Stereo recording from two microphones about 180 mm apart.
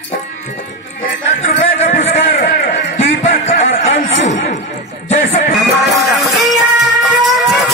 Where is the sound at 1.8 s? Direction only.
40° left (ahead or behind).